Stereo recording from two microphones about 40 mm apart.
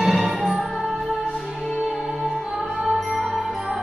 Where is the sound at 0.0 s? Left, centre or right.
Centre.